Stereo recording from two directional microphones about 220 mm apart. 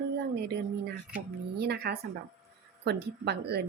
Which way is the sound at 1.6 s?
45° right (ahead or behind).